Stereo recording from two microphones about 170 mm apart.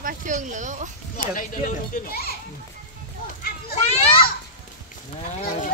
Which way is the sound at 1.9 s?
55° left (ahead or behind).